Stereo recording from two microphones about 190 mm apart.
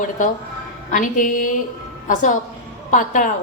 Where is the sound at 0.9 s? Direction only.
45° left (ahead or behind).